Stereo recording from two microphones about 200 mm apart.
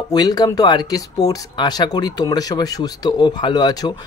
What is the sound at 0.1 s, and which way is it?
Speech, 20° left (ahead or behind).